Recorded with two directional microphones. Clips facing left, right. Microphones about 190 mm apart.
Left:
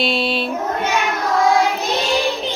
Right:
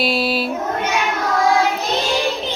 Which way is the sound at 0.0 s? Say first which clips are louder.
Right 1 dB; 5° right (ahead or behind).